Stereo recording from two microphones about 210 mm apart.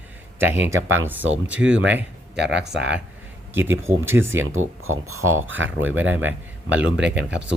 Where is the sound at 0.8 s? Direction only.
65° right (ahead or behind).